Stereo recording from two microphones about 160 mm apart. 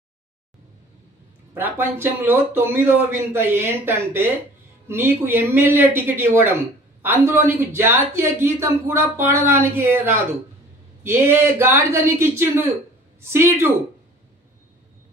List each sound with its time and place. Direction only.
1.5 s speech: 15° right (ahead or behind)